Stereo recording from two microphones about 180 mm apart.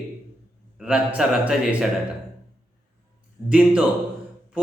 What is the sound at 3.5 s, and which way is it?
Speech, 5° right (ahead or behind).